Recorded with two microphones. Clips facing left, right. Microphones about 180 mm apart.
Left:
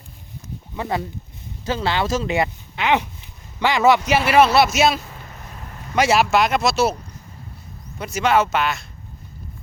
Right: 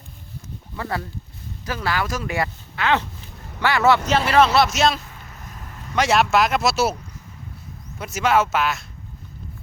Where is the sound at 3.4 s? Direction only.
65° right (ahead or behind).